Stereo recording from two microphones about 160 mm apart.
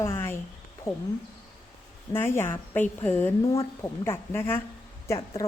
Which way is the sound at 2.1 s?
15° left (ahead or behind).